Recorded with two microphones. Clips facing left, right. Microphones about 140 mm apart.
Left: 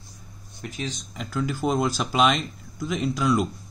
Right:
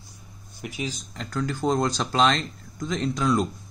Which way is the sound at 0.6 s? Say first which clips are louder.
Right 1 dB; 10° right (ahead or behind).